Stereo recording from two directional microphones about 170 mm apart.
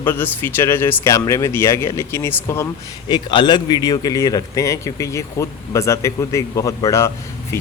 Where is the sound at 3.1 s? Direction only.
25° left (ahead or behind).